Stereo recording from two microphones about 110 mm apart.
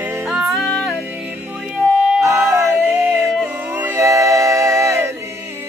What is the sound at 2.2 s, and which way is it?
Yodeling, 25° right (ahead or behind).